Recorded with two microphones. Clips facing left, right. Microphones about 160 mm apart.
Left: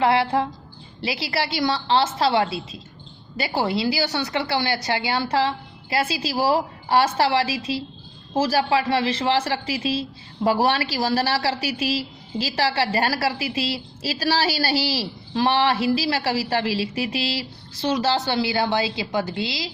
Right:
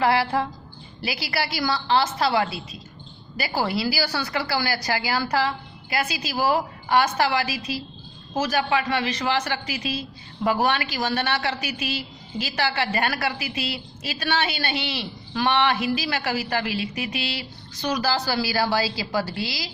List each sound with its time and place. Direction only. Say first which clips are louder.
0.0 s a woman's voice: left 2 dB; 25° left (ahead or behind)